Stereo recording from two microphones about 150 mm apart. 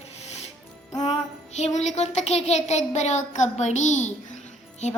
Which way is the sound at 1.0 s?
50° left (ahead or behind).